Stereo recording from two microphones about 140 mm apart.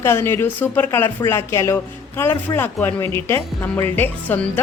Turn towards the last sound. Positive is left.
turn(degrees=15)  # may be behind; listen again after turning